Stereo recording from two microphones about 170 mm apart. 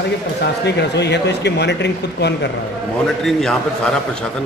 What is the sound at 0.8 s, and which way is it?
Speech, 90° left.